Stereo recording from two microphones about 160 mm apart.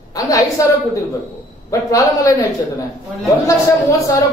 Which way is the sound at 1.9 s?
20° left (ahead or behind).